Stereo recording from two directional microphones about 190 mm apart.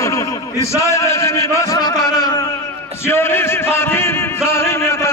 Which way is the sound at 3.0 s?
15° left (ahead or behind).